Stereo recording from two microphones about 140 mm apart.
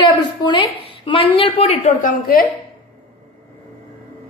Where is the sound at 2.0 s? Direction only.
75° left (ahead or behind).